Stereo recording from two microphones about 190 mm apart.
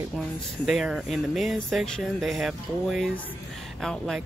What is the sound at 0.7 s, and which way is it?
Speech, centre (ahead or behind).